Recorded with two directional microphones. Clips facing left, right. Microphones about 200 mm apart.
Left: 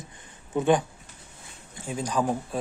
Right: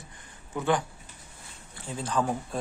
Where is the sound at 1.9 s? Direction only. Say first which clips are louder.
Left 2 dB; 15° left (ahead or behind).